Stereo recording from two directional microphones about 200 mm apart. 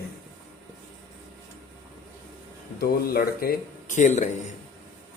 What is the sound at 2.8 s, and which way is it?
Speech, 50° left (ahead or behind).